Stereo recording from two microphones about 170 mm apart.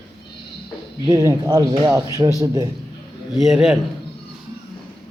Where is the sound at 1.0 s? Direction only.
20° right (ahead or behind).